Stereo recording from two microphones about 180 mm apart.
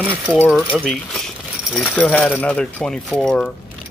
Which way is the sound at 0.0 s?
10° right (ahead or behind).